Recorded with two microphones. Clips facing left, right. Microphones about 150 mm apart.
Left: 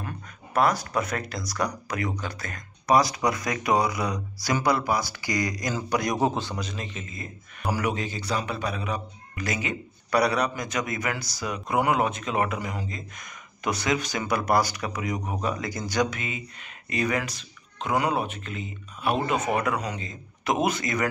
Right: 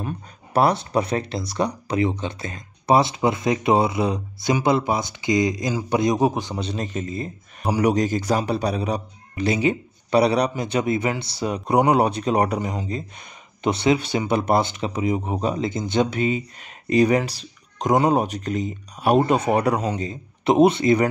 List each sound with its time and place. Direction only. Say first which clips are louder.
0.5 s a man's voice: right 4 dB; 30° right (ahead or behind); by 6.5 s 15° right (ahead or behind)
6.5 s speech: right 7 dB; 30° right (ahead or behind)